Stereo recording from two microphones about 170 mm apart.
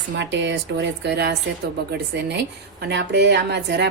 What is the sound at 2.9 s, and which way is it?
Speech, 90° right.